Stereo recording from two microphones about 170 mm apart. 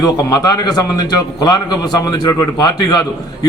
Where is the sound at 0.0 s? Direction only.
20° left (ahead or behind).